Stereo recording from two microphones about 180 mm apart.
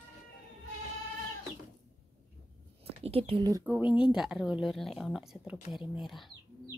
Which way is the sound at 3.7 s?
5° right (ahead or behind).